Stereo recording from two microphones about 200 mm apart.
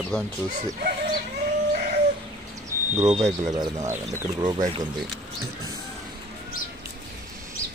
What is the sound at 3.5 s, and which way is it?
Speech, 15° right (ahead or behind).